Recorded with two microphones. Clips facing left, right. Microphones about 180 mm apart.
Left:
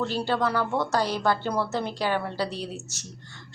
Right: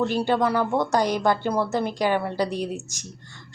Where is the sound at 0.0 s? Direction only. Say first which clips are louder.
Right 4 dB; 15° right (ahead or behind).